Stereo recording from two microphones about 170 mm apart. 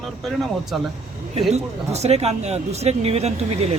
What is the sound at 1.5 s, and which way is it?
Speech, 40° right (ahead or behind).